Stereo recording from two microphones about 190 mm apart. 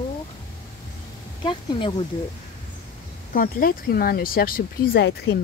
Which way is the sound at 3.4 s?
50° left (ahead or behind).